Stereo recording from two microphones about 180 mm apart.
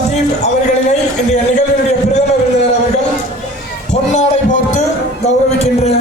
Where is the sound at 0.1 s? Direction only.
40° left (ahead or behind).